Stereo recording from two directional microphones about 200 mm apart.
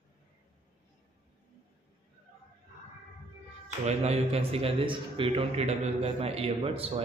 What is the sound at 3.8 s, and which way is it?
A man's voice, 35° right (ahead or behind).